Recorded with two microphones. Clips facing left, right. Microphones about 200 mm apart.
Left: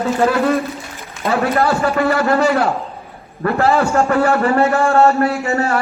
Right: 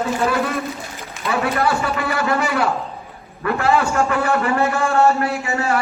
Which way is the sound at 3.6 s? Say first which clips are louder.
Left 3 dB; 35° left (ahead or behind).